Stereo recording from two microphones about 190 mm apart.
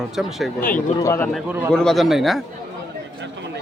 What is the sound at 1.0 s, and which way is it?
Speech, 15° left (ahead or behind).